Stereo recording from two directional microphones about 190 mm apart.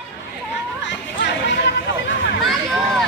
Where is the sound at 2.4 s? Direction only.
Centre (ahead or behind).